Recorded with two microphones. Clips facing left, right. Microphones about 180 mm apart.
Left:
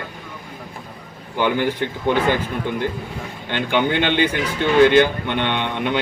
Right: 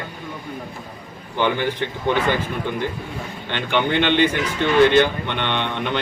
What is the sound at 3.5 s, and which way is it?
Speech, 10° left (ahead or behind).